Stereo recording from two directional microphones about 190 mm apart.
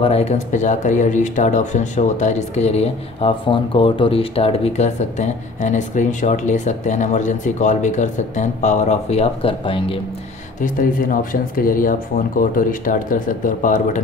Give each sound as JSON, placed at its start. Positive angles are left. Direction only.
{"t": 0.0, "sound": "speech", "side_deg": 35}
{"t": 10.6, "sound": "speech", "side_deg": 45}